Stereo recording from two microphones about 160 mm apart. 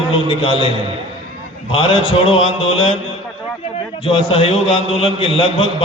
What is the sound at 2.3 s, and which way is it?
Speech, 35° left (ahead or behind).